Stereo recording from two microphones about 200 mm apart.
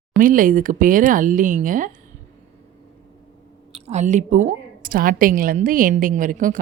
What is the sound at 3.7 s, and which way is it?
A woman's voice, 35° right (ahead or behind).